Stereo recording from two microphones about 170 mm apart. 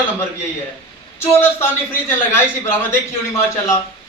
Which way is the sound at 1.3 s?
15° left (ahead or behind).